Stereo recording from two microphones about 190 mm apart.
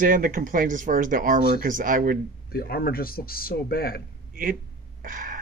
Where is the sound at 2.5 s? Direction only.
55° left (ahead or behind).